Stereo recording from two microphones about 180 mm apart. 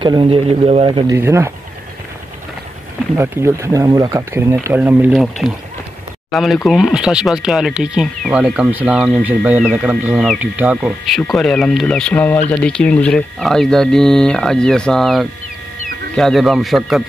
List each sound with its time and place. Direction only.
0.0 s speech: 25° right (ahead or behind)
3.2 s speech: 15° right (ahead or behind)
11.3 s speech: 5° left (ahead or behind)